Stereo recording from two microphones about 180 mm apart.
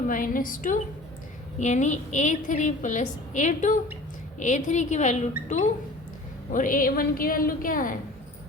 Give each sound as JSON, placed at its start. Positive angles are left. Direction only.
{"t": 0.1, "sound": "a woman's voice", "side_deg": 50}